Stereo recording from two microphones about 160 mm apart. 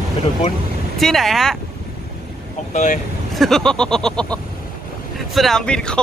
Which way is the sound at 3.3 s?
Centre (ahead or behind).